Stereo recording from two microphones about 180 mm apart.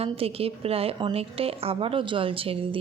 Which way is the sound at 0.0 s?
35° right (ahead or behind).